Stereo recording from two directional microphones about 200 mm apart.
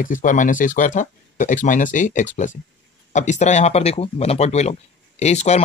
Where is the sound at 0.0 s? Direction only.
40° left (ahead or behind).